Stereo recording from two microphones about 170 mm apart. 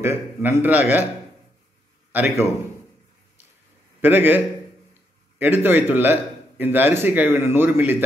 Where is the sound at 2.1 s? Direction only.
10° right (ahead or behind).